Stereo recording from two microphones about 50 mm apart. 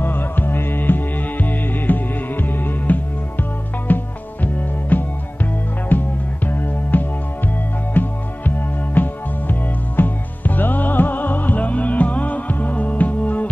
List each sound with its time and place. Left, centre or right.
0.0 s music: left